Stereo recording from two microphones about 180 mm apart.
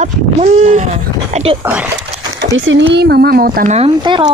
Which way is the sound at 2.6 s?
90° right.